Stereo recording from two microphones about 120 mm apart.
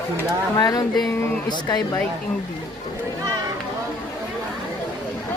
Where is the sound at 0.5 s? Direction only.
30° left (ahead or behind).